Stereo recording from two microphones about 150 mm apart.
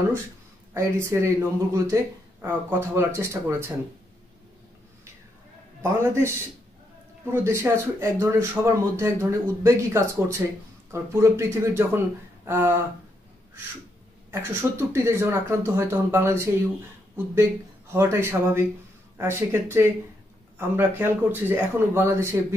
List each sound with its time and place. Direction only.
0.7 s speech: 20° right (ahead or behind)
5.8 s speech: 15° right (ahead or behind)
14.3 s speech: 15° right (ahead or behind)